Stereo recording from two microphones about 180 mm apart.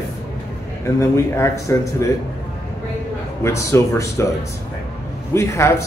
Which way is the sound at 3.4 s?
15° left (ahead or behind).